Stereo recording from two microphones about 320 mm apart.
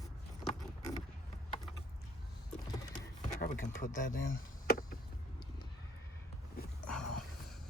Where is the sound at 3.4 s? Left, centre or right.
Left.